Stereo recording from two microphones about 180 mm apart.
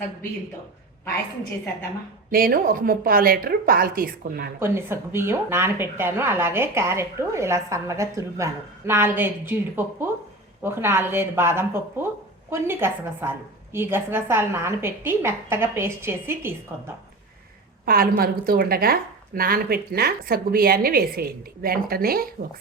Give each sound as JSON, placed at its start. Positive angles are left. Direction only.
{"t": 2.3, "sound": "speech", "side_deg": -55}
{"t": 4.6, "sound": "a woman's voice", "side_deg": -15}
{"t": 17.8, "sound": "a woman's voice", "side_deg": -55}